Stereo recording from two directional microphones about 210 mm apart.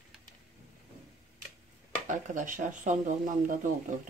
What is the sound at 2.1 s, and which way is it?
Speech, 40° right (ahead or behind).